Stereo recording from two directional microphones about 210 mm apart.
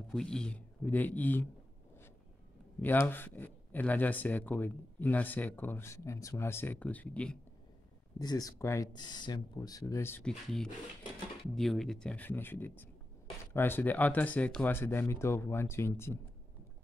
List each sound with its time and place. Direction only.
0.1 s speech: 5° left (ahead or behind)
2.8 s speech: 10° left (ahead or behind)
8.2 s speech: 15° left (ahead or behind)